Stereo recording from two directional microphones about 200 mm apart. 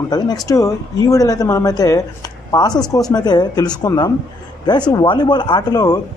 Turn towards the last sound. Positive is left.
turn(degrees=20)  # may be behind; listen again after turning